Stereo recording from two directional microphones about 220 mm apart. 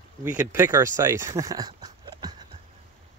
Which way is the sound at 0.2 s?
10° right (ahead or behind).